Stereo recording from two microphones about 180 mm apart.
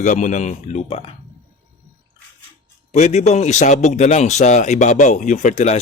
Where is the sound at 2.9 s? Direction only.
35° left (ahead or behind).